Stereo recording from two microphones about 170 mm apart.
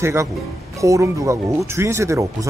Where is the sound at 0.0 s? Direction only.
15° right (ahead or behind).